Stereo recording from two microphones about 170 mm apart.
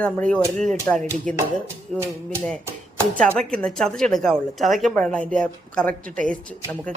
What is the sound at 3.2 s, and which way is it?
Speech, 5° left (ahead or behind).